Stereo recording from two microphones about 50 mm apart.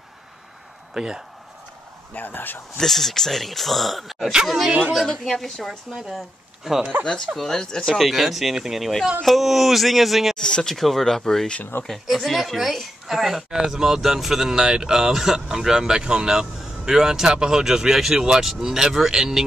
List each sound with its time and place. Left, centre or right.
0.9 s a woman's voice: centre
2.1 s speech: left
2.8 s speech: centre
7.3 s speech: centre
7.9 s speech: centre
10.4 s speech: centre
10.8 s a woman's voice: centre